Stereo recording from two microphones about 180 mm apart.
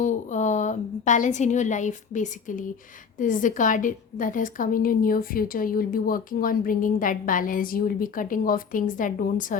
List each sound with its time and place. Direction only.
0.0 s a woman's voice: 45° left (ahead or behind)